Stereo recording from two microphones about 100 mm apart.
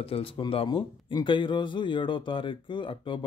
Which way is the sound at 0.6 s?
50° left (ahead or behind).